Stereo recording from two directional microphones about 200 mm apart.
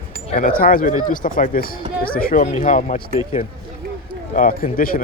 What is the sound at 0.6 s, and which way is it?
Speech, 45° left (ahead or behind).